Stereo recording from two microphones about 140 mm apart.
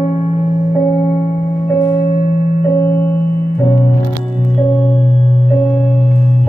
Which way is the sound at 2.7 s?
15° left (ahead or behind).